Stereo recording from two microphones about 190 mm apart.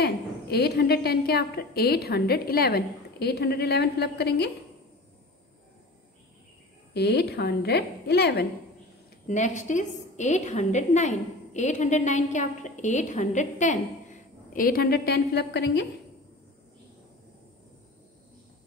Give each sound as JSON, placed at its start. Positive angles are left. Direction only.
{"t": 0.0, "sound": "a woman's voice", "side_deg": 55}
{"t": 6.9, "sound": "a woman's voice", "side_deg": 60}
{"t": 9.3, "sound": "a woman's voice", "side_deg": 40}